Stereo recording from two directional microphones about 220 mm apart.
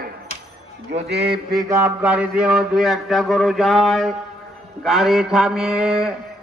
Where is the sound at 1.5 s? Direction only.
10° right (ahead or behind).